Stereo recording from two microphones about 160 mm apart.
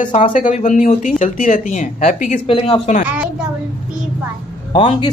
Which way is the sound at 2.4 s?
35° left (ahead or behind).